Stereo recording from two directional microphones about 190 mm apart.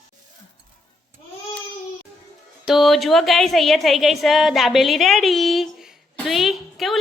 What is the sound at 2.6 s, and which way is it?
A woman's voice, centre (ahead or behind).